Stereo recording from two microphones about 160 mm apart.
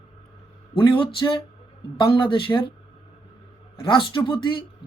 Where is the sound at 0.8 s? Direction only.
30° left (ahead or behind).